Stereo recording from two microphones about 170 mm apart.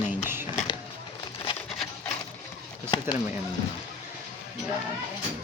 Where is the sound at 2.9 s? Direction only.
25° left (ahead or behind).